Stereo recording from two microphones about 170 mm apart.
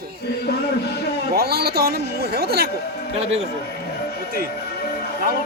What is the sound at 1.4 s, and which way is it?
Speech, 65° right (ahead or behind).